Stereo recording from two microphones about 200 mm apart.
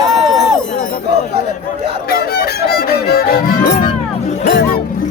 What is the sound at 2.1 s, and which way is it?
Music, 50° left (ahead or behind).